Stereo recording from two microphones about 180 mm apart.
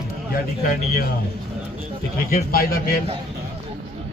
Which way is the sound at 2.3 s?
55° left (ahead or behind).